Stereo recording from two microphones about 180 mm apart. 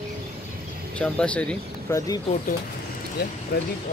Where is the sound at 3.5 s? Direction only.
60° left (ahead or behind).